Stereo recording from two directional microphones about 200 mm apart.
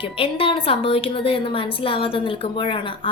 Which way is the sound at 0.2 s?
25° left (ahead or behind).